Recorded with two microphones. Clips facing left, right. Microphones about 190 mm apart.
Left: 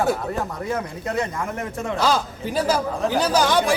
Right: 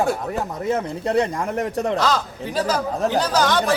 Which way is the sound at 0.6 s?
25° right (ahead or behind).